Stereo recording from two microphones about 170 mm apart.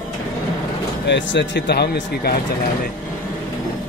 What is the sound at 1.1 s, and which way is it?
Speech, 90° left.